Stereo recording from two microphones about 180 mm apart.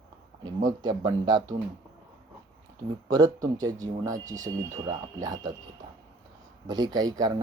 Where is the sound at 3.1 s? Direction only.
20° right (ahead or behind).